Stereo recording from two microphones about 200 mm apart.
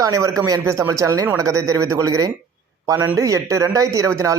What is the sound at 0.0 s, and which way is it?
Speech, 15° right (ahead or behind).